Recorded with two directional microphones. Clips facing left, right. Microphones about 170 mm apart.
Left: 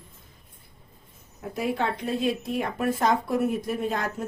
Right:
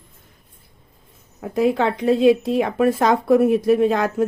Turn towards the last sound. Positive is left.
turn(degrees=-90)